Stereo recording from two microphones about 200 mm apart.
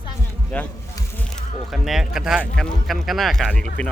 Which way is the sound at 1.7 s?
Centre (ahead or behind).